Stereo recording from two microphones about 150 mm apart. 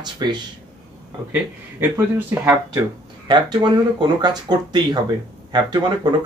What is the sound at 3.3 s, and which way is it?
Speech, 30° right (ahead or behind).